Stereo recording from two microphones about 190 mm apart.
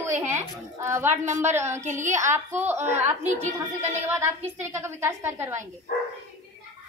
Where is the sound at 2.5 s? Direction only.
10° right (ahead or behind).